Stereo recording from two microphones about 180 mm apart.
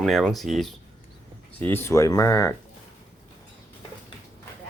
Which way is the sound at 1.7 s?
15° left (ahead or behind).